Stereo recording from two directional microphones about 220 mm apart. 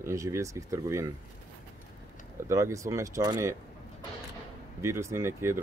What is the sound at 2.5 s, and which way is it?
Speech, 15° right (ahead or behind).